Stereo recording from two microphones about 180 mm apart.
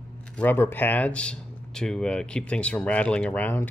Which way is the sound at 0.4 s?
10° left (ahead or behind).